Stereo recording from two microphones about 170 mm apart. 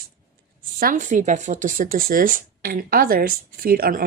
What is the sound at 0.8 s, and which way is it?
Speech, 55° right (ahead or behind).